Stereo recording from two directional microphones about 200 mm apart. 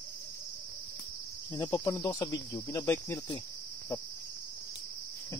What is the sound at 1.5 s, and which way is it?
Speech, 15° left (ahead or behind).